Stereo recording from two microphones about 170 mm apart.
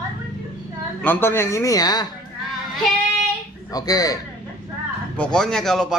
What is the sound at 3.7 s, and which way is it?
Speech, 20° left (ahead or behind).